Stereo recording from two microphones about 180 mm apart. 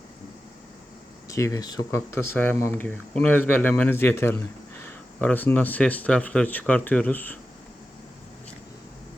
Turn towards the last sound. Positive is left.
turn(degrees=10)  # may be behind; listen again after turning